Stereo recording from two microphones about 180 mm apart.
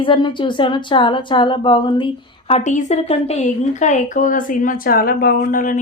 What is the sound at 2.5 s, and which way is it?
A woman's voice, 40° left (ahead or behind).